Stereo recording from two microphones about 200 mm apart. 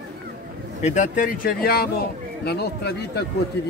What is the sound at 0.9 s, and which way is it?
Speech, 40° left (ahead or behind).